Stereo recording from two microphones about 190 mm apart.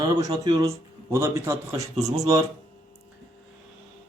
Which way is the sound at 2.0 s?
35° right (ahead or behind).